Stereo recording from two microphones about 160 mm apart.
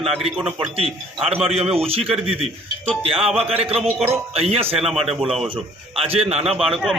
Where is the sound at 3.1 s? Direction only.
35° right (ahead or behind).